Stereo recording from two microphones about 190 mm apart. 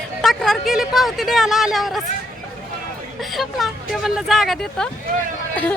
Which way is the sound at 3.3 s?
Centre (ahead or behind).